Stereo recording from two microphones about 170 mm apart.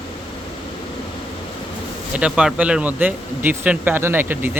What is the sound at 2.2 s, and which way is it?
Speech, 5° right (ahead or behind).